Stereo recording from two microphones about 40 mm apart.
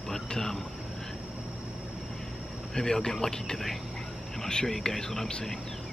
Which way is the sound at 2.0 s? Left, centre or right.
Centre.